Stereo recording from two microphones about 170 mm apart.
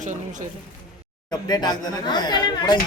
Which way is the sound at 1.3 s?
25° left (ahead or behind).